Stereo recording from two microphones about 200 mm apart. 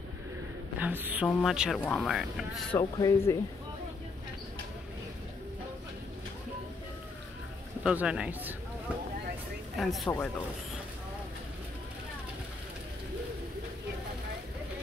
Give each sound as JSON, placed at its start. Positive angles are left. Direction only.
{"t": 0.7, "sound": "speech", "side_deg": -10}
{"t": 2.8, "sound": "speech", "side_deg": 15}
{"t": 7.8, "sound": "speech", "side_deg": -5}
{"t": 9.8, "sound": "speech", "side_deg": 0}